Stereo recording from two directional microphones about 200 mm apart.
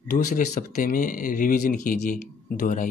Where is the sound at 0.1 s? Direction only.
40° left (ahead or behind).